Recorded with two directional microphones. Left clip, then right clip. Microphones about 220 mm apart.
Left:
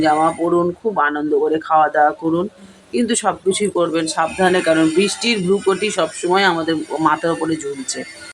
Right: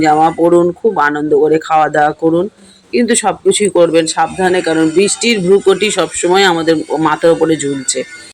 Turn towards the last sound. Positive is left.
turn(degrees=-15)  # may be behind; listen again after turning